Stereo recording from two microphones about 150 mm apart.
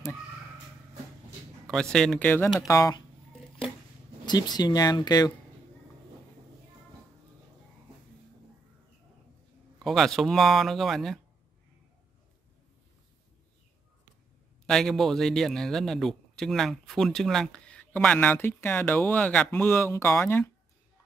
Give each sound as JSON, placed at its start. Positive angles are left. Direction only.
{"t": 1.7, "sound": "a man's voice", "side_deg": 0}
{"t": 4.3, "sound": "speech", "side_deg": 25}
{"t": 9.8, "sound": "a man's voice", "side_deg": 0}
{"t": 14.7, "sound": "a man's voice", "side_deg": 5}